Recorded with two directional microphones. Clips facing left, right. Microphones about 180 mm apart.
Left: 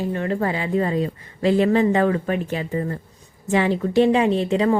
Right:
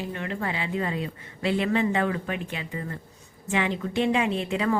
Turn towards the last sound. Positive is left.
turn(degrees=35)  # may be behind; listen again after turning